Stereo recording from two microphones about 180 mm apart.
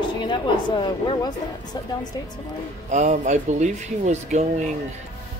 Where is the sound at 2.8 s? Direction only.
40° right (ahead or behind).